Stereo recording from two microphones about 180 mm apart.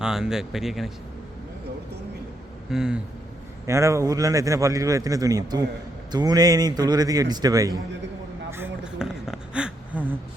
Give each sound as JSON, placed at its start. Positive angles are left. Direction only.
{"t": 0.0, "sound": "speech", "side_deg": -5}
{"t": 2.6, "sound": "speech", "side_deg": -5}
{"t": 3.7, "sound": "a man's voice", "side_deg": -15}
{"t": 8.4, "sound": "a sound", "side_deg": -10}